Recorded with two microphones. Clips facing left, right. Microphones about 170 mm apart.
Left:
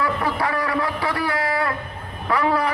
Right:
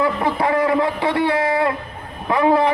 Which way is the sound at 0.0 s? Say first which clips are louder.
Right 4 dB; 20° right (ahead or behind).